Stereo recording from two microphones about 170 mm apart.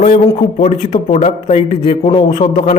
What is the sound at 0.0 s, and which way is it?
Speech, 45° left (ahead or behind).